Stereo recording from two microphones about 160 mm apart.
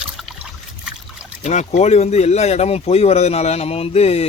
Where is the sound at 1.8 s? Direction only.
45° left (ahead or behind).